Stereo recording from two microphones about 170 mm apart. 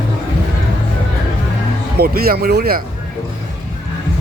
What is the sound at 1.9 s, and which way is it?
Speech, 65° right (ahead or behind).